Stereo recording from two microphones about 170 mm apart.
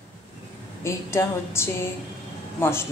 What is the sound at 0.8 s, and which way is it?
A woman's voice, 15° left (ahead or behind).